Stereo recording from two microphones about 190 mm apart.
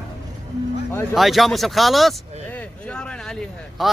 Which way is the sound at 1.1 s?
Centre (ahead or behind).